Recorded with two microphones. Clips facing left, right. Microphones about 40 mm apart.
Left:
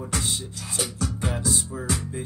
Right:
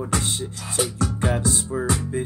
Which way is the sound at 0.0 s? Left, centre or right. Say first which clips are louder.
Right 4 dB; right.